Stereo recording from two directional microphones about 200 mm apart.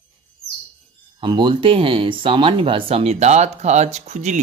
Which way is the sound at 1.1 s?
25° right (ahead or behind).